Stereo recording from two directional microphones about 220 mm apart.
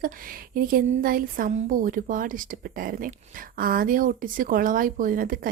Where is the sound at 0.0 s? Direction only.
40° right (ahead or behind).